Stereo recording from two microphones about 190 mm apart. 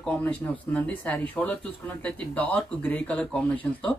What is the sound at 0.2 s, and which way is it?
Speech, 10° left (ahead or behind).